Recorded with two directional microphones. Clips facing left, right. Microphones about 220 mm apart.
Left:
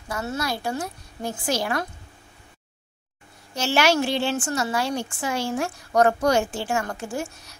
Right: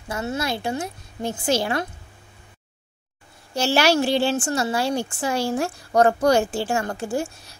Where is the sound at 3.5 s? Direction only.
35° right (ahead or behind).